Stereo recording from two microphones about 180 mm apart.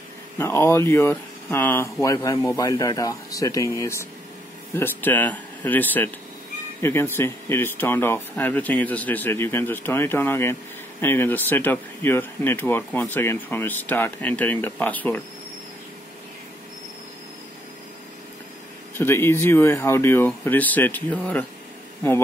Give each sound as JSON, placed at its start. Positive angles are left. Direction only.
{"t": 0.4, "sound": "speech", "side_deg": 15}
{"t": 18.9, "sound": "speech", "side_deg": 15}